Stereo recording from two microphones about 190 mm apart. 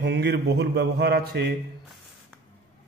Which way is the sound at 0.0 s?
65° right (ahead or behind).